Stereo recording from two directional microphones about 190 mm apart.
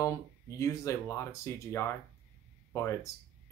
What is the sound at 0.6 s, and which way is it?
Speech, 15° left (ahead or behind).